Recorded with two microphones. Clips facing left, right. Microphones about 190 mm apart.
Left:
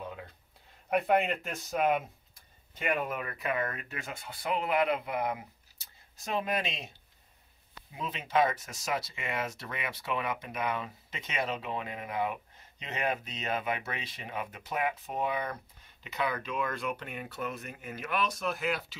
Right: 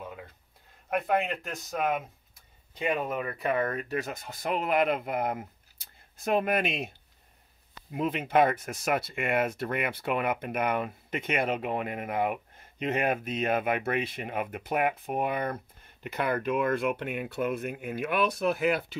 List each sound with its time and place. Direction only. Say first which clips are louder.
0.0 s a sound: even; 5° right (ahead or behind)
0.8 s speech: left 1 dB; centre (ahead or behind)
2.3 s speech: right 5 dB; 20° right (ahead or behind); by 6.9 s 55° right (ahead or behind)
7.9 s speech: right 5 dB; 55° right (ahead or behind)